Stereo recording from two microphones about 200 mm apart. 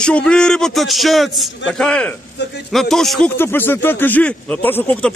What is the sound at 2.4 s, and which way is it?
Speech, 60° left (ahead or behind).